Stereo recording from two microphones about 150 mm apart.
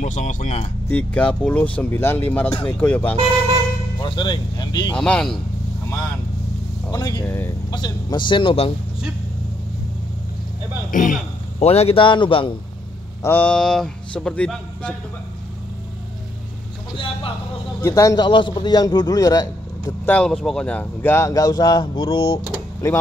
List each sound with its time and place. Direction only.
0.0 s speech: 55° left (ahead or behind)
0.8 s speech: 10° left (ahead or behind)
4.0 s a man's voice: 30° left (ahead or behind)
4.9 s speech: 5° left (ahead or behind)
6.9 s a man's voice: 25° left (ahead or behind)
10.9 s a man's voice: 60° left (ahead or behind)
11.6 s speech: 40° left (ahead or behind)
13.2 s speech: 10° left (ahead or behind)
16.9 s a man's voice: 35° left (ahead or behind)
17.8 s a man's voice: 20° left (ahead or behind)
20.1 s speech: 5° left (ahead or behind); by 22.4 s 35° left (ahead or behind)
22.4 s speech: 20° left (ahead or behind)